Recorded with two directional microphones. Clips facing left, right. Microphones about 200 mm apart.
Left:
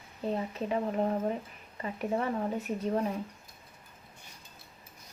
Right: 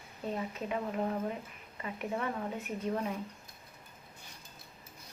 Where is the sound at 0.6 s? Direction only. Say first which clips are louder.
Left 5 dB; 30° left (ahead or behind).